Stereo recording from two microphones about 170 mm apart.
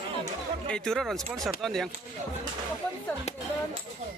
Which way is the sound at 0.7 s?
Centre (ahead or behind).